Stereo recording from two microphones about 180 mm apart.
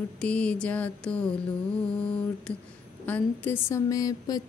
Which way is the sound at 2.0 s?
5° left (ahead or behind).